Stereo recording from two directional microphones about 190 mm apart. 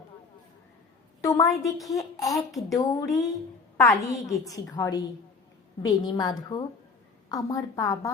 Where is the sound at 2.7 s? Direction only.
20° left (ahead or behind).